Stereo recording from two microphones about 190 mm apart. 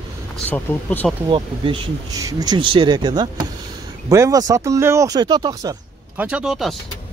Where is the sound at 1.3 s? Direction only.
25° right (ahead or behind).